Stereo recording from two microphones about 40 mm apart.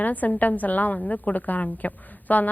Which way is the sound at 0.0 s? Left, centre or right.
Left.